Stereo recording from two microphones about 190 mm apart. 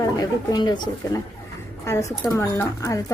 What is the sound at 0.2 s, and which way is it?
A woman's voice, 20° left (ahead or behind).